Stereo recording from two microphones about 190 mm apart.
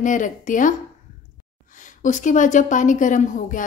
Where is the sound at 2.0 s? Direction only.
40° left (ahead or behind).